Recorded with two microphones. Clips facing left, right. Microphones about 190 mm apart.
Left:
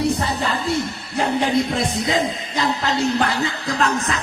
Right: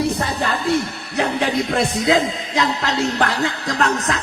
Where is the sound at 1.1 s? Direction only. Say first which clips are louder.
Left 1 dB; 70° right (ahead or behind).